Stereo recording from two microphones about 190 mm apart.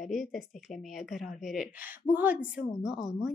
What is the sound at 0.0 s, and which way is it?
Speech, centre (ahead or behind).